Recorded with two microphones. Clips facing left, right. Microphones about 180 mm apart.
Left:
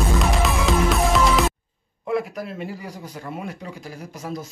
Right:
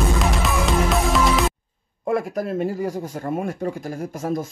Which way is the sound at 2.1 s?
45° right (ahead or behind).